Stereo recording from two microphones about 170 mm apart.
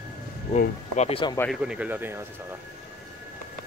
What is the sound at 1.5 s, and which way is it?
Speech, 5° right (ahead or behind).